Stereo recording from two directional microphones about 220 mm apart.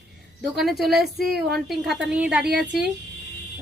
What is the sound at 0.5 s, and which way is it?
Speech, centre (ahead or behind).